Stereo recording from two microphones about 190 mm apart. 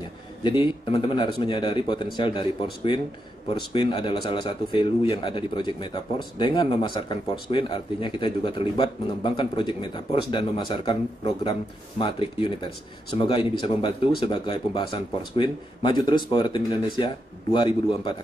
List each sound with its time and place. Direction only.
0.4 s a man's voice: 25° left (ahead or behind)